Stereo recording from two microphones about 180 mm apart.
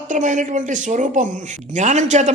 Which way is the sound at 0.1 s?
45° right (ahead or behind).